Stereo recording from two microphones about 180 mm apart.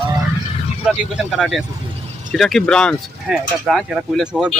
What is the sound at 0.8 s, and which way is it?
Speech, 5° right (ahead or behind).